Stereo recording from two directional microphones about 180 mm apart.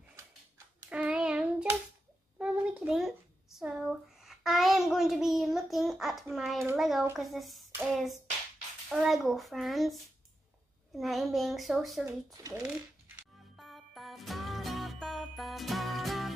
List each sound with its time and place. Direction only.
0.8 s child singing: 5° right (ahead or behind)
2.3 s a sound: 10° right (ahead or behind)
6.6 s a child's voice: 5° right (ahead or behind)
12.0 s speech: 20° right (ahead or behind)
13.6 s music: centre (ahead or behind)